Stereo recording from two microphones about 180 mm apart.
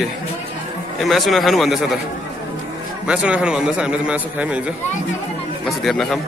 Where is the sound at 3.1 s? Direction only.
5° right (ahead or behind).